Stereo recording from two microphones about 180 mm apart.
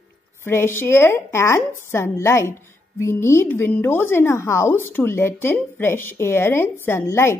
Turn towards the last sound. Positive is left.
turn(degrees=15)  # may be behind; listen again after turning